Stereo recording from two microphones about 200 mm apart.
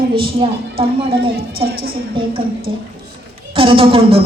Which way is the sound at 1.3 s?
50° right (ahead or behind).